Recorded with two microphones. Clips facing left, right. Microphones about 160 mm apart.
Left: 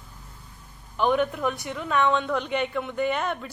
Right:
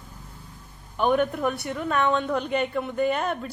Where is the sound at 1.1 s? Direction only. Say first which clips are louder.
Right 1 dB; 45° right (ahead or behind).